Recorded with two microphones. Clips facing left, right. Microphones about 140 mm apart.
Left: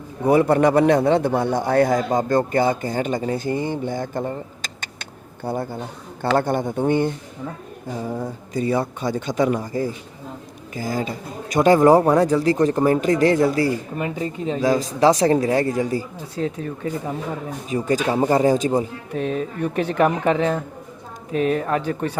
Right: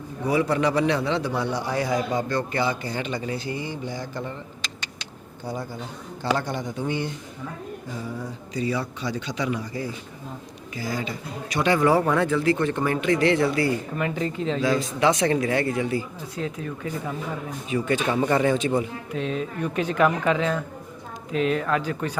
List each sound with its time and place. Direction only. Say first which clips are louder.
0.3 s a man's voice: left 7 dB; 50° left (ahead or behind)
14.0 s speech: left 1 dB; 15° left (ahead or behind)
14.9 s speech: left 7 dB; 35° left (ahead or behind)